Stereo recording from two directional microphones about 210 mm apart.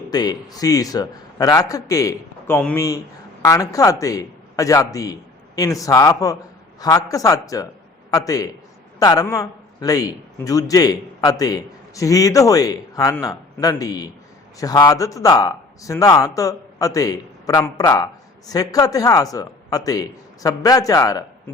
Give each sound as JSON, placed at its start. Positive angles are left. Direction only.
{"t": 0.1, "sound": "a man's voice", "side_deg": 20}